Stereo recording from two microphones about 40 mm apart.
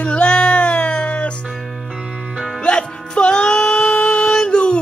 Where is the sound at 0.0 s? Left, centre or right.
Left.